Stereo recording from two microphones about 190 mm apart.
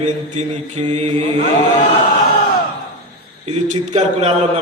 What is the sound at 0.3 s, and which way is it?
Speech, 35° right (ahead or behind).